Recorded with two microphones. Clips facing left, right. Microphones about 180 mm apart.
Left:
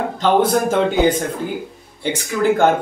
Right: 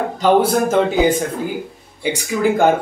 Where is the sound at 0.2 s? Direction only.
5° right (ahead or behind).